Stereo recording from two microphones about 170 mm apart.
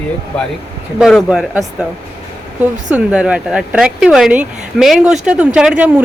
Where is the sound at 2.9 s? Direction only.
5° right (ahead or behind).